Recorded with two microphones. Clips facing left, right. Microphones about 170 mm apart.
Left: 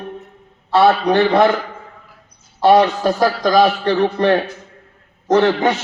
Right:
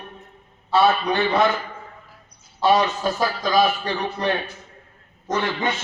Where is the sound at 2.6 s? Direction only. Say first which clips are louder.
Left 7 dB; 60° left (ahead or behind).